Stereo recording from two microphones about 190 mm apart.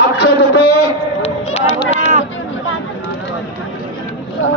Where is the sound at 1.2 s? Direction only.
30° left (ahead or behind).